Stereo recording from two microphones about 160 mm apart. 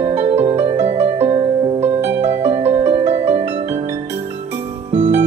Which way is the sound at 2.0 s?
15° right (ahead or behind).